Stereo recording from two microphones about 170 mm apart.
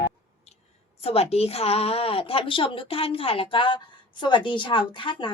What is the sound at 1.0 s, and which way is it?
A woman's voice, 35° left (ahead or behind).